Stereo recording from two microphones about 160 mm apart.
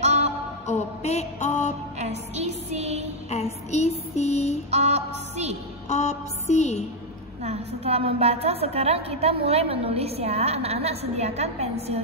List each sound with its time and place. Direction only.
0.0 s music: 45° right (ahead or behind)
0.7 s mantra: 45° left (ahead or behind)
2.0 s music: 45° right (ahead or behind)
3.3 s a sound: 45° left (ahead or behind)
4.6 s music: 45° right (ahead or behind)
5.9 s music: 45° left (ahead or behind)
7.4 s a woman's voice: 40° right (ahead or behind)